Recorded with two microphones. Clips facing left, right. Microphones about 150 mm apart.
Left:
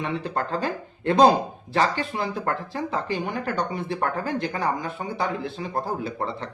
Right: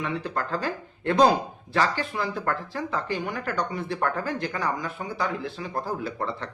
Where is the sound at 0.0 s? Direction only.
25° left (ahead or behind).